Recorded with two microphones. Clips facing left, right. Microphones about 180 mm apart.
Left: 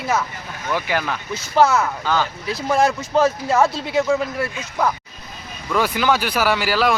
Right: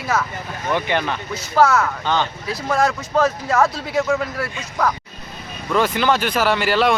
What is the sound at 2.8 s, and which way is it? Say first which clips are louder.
Speech: left 1 dB; 25° left (ahead or behind).